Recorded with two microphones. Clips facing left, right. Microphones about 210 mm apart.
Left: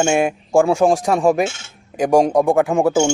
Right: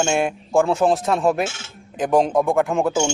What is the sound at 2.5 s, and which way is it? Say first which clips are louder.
Speech: left 3 dB; centre (ahead or behind).